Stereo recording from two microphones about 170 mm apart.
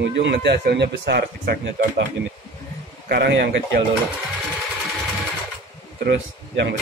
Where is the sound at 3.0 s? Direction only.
70° right (ahead or behind).